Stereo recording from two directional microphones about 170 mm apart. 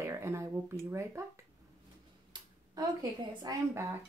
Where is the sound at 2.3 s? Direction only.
25° right (ahead or behind).